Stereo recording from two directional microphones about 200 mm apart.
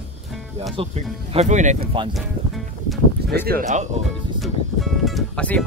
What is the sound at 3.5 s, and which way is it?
Speech, 40° right (ahead or behind).